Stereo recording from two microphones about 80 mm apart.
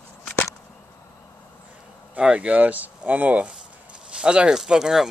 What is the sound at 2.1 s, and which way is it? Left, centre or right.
Speech, centre.